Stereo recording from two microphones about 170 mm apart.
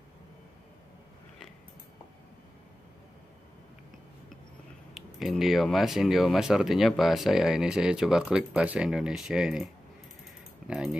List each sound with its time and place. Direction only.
4.9 s speech: centre (ahead or behind)
10.7 s speech: 5° right (ahead or behind)